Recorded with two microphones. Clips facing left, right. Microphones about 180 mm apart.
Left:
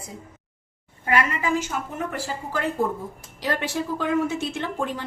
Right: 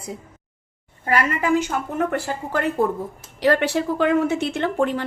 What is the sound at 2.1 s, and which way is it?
A woman's voice, 65° right (ahead or behind).